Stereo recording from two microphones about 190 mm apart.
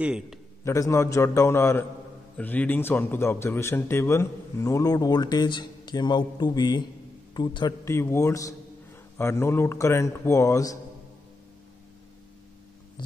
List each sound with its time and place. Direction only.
0.0 s a man's voice: 5° right (ahead or behind)
0.7 s a man's voice: 15° left (ahead or behind)